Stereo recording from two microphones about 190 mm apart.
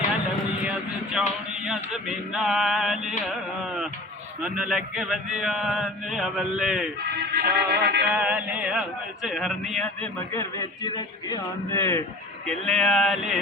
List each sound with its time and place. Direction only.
0.6 s speech: 5° right (ahead or behind)
7.3 s music: 60° right (ahead or behind)
8.0 s speech: 5° right (ahead or behind)
10.6 s a man's voice: 20° left (ahead or behind)
12.5 s speech: 5° left (ahead or behind)